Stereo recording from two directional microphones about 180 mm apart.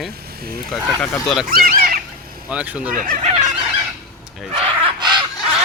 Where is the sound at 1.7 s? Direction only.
50° right (ahead or behind).